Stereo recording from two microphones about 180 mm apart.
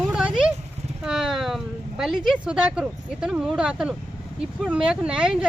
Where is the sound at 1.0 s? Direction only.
5° right (ahead or behind).